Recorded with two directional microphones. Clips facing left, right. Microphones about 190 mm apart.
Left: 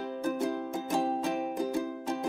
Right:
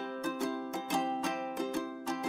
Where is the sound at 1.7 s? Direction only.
15° left (ahead or behind).